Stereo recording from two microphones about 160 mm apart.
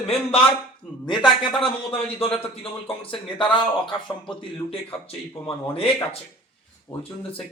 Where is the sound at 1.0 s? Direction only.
30° left (ahead or behind).